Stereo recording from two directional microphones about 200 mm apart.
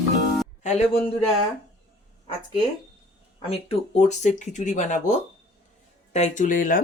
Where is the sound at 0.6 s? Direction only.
35° left (ahead or behind).